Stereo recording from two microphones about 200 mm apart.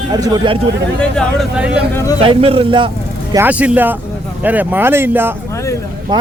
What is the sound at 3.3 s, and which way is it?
Speech, 10° right (ahead or behind).